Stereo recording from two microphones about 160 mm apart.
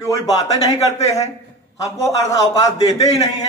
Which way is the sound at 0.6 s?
20° left (ahead or behind).